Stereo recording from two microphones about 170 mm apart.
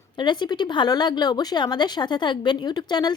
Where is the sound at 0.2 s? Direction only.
25° left (ahead or behind).